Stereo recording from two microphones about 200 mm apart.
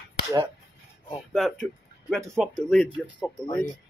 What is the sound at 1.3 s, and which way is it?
Speech, centre (ahead or behind).